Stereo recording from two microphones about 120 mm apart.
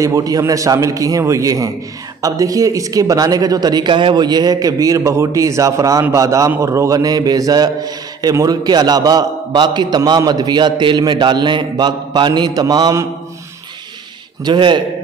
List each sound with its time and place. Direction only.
0.0 s a man's voice: 30° right (ahead or behind)
14.4 s a man's voice: 40° right (ahead or behind)